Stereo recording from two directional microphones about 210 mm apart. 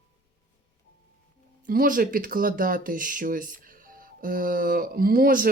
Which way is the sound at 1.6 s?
45° right (ahead or behind).